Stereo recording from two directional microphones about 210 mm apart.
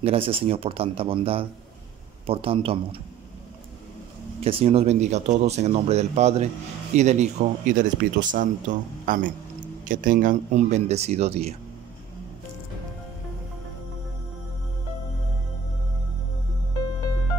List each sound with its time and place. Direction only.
0.0 s speech: 25° right (ahead or behind)
4.4 s speech: 25° right (ahead or behind)